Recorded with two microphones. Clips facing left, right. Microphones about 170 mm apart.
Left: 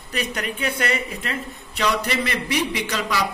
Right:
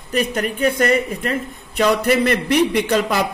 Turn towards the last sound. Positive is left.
turn(degrees=-50)  # may be behind; listen again after turning